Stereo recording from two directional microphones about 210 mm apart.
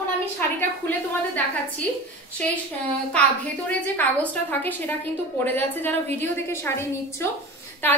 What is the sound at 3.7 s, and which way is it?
A woman's voice, 10° left (ahead or behind).